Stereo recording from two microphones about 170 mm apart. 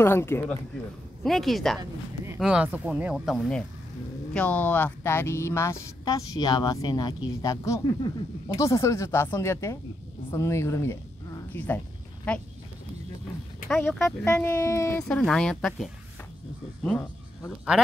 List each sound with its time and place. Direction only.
0.0 s speech: 15° left (ahead or behind)
1.2 s speech: centre (ahead or behind)
13.7 s speech: 5° left (ahead or behind)